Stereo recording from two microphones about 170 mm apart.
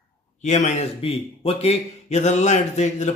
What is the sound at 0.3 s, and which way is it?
A man's voice, 40° left (ahead or behind).